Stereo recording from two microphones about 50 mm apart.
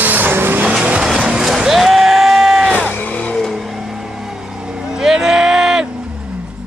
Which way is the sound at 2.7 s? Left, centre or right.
Left.